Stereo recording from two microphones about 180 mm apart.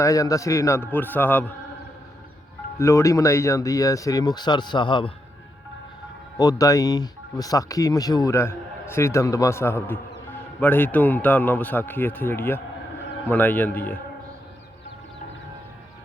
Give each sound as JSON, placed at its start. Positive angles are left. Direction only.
{"t": 0.0, "sound": "a man's voice", "side_deg": 20}
{"t": 2.7, "sound": "speech", "side_deg": 15}
{"t": 6.3, "sound": "a man's voice", "side_deg": 20}